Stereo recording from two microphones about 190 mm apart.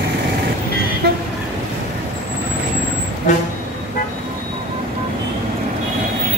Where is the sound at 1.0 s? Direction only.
55° right (ahead or behind).